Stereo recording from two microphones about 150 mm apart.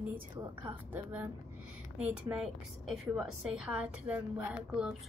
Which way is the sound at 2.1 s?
5° right (ahead or behind).